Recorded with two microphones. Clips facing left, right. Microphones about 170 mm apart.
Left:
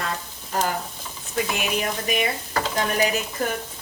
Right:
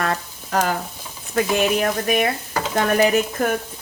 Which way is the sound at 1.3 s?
55° right (ahead or behind).